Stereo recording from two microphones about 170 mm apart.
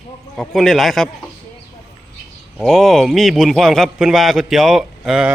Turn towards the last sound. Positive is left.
turn(degrees=-5)  # may be behind; listen again after turning